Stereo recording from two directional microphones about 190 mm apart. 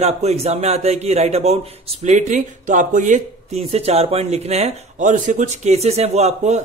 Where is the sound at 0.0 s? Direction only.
35° right (ahead or behind).